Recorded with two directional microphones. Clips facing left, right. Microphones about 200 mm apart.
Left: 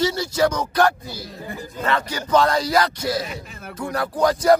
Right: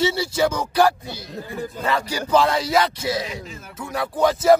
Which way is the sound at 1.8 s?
10° right (ahead or behind).